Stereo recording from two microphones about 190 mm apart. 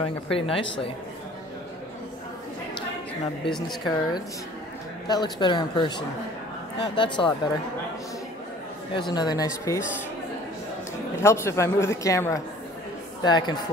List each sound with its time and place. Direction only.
0.0 s speech: 30° left (ahead or behind)
3.6 s speech: 20° left (ahead or behind)
9.1 s speech: 20° left (ahead or behind)
11.1 s a man's voice: 15° left (ahead or behind)